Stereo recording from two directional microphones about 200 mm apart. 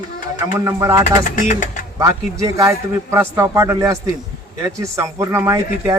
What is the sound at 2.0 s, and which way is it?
Speech, 15° right (ahead or behind).